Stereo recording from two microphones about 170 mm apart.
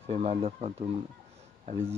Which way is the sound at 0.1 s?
35° right (ahead or behind).